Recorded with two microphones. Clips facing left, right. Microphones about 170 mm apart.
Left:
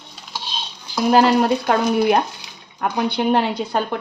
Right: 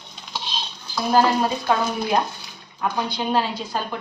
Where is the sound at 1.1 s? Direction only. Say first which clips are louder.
Left 4 dB; 70° left (ahead or behind).